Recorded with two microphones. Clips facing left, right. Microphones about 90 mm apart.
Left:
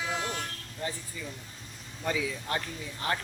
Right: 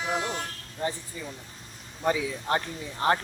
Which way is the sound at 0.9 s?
25° right (ahead or behind).